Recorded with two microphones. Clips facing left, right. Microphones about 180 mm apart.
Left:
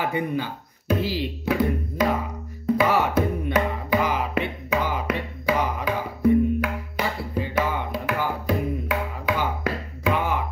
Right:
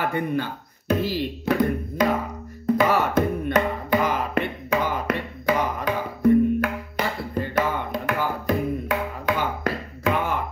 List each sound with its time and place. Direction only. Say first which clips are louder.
0.0 s speech: right 1 dB; 10° left (ahead or behind)
2.6 s music: even; 10° left (ahead or behind)